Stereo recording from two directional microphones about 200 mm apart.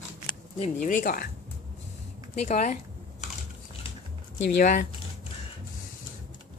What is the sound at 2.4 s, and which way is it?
Speech, 35° left (ahead or behind).